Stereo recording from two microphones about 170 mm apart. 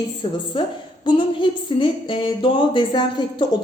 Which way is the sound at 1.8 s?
30° left (ahead or behind).